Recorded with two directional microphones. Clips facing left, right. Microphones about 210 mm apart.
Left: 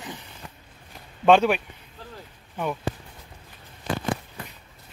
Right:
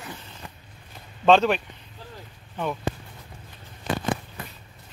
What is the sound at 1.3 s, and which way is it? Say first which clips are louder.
Speech: left 1 dB; 10° left (ahead or behind).